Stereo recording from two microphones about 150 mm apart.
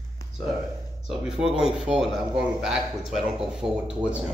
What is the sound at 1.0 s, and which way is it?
Speech, 5° right (ahead or behind).